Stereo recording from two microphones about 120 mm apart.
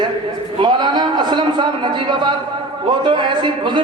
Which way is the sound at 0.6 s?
35° right (ahead or behind).